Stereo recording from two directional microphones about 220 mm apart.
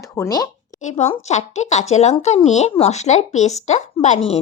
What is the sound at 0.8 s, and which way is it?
Speech, 30° left (ahead or behind).